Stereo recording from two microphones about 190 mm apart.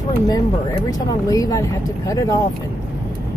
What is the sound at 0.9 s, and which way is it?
Speech, 20° left (ahead or behind).